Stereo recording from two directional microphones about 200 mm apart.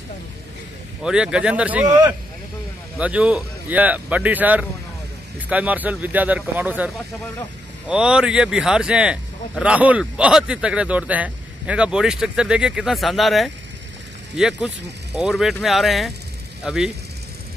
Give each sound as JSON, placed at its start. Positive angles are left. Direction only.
{"t": 1.0, "sound": "a man's voice", "side_deg": -5}
{"t": 3.0, "sound": "speech", "side_deg": -5}
{"t": 7.9, "sound": "a man's voice", "side_deg": -5}